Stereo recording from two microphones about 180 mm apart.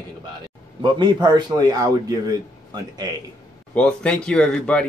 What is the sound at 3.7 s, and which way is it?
Speech, 5° left (ahead or behind).